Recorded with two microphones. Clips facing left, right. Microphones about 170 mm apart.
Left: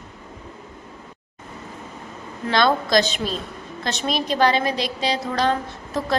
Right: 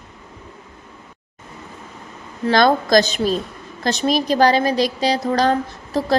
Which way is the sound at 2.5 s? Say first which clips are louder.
Right 4 dB; 45° right (ahead or behind).